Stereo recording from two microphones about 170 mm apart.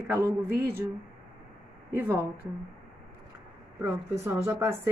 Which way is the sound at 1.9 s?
15° right (ahead or behind).